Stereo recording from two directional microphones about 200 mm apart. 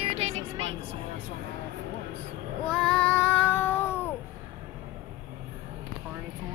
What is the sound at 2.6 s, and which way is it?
Child singing, 5° left (ahead or behind).